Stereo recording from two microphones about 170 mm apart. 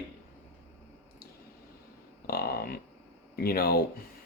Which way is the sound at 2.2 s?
65° left (ahead or behind).